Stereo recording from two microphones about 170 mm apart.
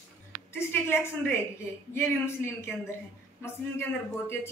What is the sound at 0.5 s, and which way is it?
A woman's voice, 15° left (ahead or behind).